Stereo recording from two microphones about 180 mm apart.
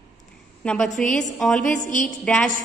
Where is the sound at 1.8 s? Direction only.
45° left (ahead or behind).